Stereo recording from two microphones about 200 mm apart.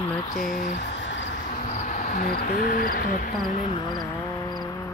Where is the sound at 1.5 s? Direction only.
40° left (ahead or behind).